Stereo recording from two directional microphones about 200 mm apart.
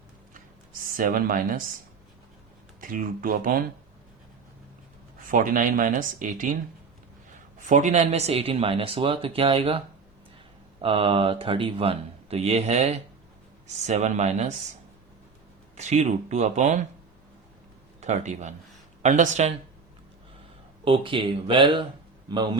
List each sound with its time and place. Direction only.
0.9 s speech: 45° right (ahead or behind)
2.8 s speech: 40° right (ahead or behind)
5.3 s speech: 45° right (ahead or behind)
7.6 s speech: 40° right (ahead or behind)
15.7 s speech: 35° right (ahead or behind)
18.0 s speech: 35° right (ahead or behind)
20.8 s a man's voice: 25° right (ahead or behind)